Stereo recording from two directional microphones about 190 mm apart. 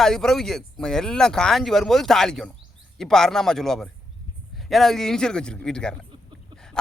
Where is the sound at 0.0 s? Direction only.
Centre (ahead or behind).